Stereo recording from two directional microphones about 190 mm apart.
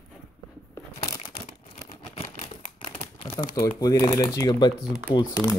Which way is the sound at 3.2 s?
20° left (ahead or behind).